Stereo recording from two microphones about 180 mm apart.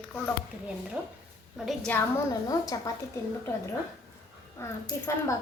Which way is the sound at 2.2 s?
20° left (ahead or behind).